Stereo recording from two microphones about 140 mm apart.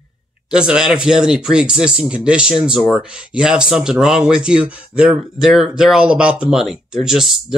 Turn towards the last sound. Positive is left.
turn(degrees=0)  # may be behind; listen again after turning